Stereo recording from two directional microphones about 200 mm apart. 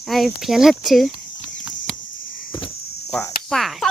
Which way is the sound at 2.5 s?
20° left (ahead or behind).